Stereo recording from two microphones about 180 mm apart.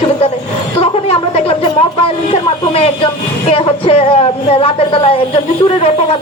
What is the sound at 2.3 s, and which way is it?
A woman's voice, 35° left (ahead or behind).